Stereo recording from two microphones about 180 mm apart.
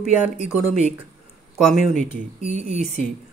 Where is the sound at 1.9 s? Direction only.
35° right (ahead or behind).